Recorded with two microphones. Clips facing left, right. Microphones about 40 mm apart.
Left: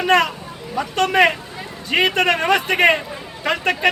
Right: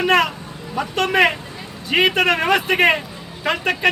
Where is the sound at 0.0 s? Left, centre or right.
Centre.